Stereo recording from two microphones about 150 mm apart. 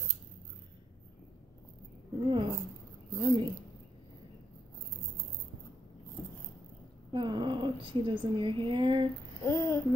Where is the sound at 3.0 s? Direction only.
20° left (ahead or behind).